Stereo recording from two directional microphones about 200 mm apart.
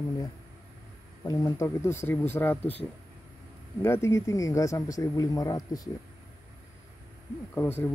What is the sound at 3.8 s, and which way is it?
Speech, 15° left (ahead or behind).